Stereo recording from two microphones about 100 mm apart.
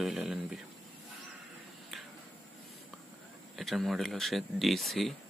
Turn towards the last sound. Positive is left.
turn(degrees=0)  # may be behind; listen again after turning